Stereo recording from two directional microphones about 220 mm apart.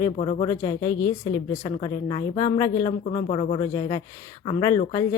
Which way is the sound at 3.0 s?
35° left (ahead or behind).